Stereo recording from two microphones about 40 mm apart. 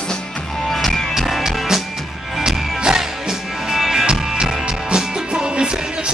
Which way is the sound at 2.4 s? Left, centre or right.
Centre.